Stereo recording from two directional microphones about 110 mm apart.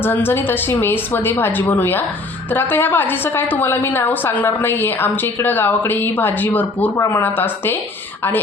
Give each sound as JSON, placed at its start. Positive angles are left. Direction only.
{"t": 0.0, "sound": "a woman's voice", "side_deg": 20}